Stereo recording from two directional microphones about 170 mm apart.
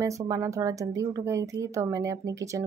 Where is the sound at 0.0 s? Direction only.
20° right (ahead or behind).